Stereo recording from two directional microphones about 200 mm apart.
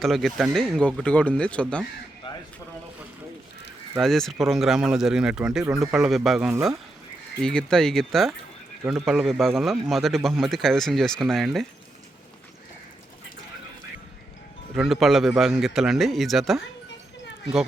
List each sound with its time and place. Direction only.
0.0 s speech: centre (ahead or behind)
2.3 s a sound: 25° left (ahead or behind)
3.9 s speech: centre (ahead or behind)
14.8 s speech: centre (ahead or behind)